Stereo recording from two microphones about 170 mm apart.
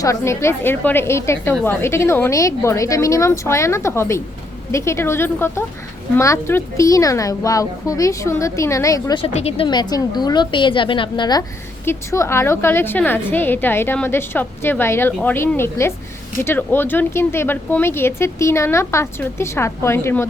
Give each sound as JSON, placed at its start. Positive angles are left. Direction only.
{"t": 0.0, "sound": "a woman's voice", "side_deg": 15}
{"t": 9.1, "sound": "a woman's voice", "side_deg": 35}